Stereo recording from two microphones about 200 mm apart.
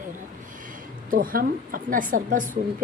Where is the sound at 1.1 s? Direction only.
45° right (ahead or behind).